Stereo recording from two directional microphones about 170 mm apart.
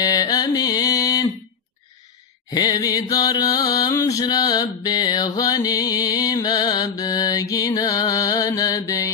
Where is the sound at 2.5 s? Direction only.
20° left (ahead or behind).